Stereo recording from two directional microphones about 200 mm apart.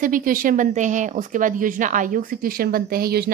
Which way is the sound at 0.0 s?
45° right (ahead or behind).